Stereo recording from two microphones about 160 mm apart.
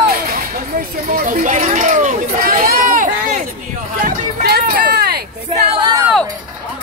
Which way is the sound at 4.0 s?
60° right (ahead or behind).